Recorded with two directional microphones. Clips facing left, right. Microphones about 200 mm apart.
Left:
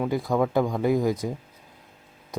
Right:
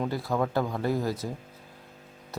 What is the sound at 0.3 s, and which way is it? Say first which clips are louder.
Speech: left 5 dB; 10° left (ahead or behind).